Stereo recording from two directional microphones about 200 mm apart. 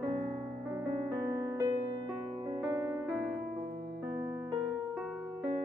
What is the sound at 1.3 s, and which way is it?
Music, 15° right (ahead or behind).